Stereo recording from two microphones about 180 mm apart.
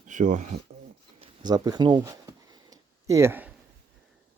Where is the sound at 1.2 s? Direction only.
25° right (ahead or behind).